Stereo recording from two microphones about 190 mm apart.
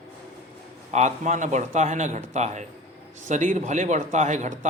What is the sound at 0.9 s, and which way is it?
Speech, 40° right (ahead or behind).